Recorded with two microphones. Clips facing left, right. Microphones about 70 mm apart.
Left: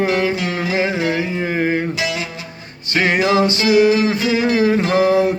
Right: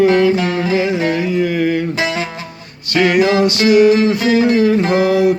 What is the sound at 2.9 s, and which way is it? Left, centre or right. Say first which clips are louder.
Music: right 4 dB; left.